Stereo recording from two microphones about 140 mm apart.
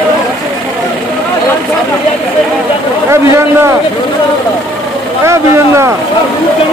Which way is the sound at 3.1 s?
20° right (ahead or behind).